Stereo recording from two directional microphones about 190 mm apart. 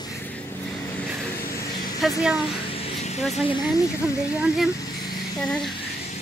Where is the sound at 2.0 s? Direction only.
Centre (ahead or behind).